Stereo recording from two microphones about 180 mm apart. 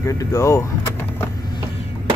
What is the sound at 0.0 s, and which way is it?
Speech, 15° left (ahead or behind).